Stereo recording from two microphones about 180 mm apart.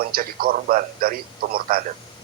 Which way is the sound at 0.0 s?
55° right (ahead or behind).